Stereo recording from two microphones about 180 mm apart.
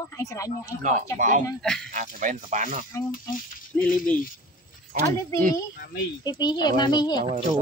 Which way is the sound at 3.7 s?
10° left (ahead or behind).